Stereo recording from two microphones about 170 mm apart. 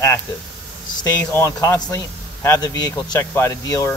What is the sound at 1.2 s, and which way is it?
Speech, 15° left (ahead or behind).